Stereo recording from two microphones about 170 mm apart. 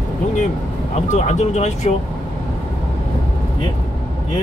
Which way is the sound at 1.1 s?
40° left (ahead or behind).